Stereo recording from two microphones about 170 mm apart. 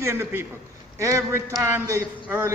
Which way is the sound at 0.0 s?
15° right (ahead or behind).